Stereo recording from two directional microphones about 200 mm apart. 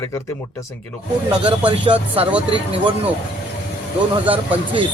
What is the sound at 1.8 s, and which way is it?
Speech, 25° right (ahead or behind).